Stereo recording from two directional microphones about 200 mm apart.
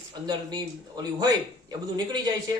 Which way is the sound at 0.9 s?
20° right (ahead or behind).